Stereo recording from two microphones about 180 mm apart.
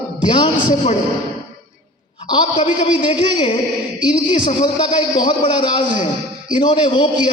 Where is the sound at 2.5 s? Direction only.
45° left (ahead or behind).